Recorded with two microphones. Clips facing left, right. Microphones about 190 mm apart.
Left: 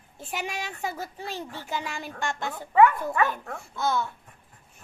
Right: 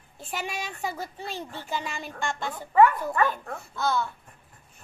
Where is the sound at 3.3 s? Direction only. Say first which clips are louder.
Even; 20° left (ahead or behind).